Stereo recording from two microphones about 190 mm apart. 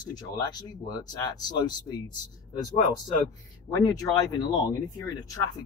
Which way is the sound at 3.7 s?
20° left (ahead or behind).